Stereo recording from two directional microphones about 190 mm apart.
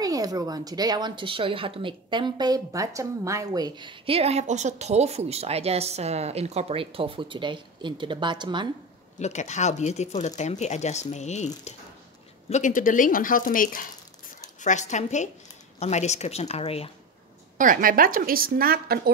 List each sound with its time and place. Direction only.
0.0 s speech: 20° right (ahead or behind)
9.2 s speech: 40° left (ahead or behind)
17.6 s a woman's voice: 45° right (ahead or behind)